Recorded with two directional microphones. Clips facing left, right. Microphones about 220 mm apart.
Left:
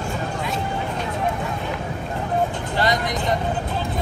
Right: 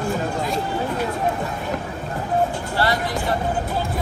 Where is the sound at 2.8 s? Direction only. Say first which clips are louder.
Even; 20° left (ahead or behind).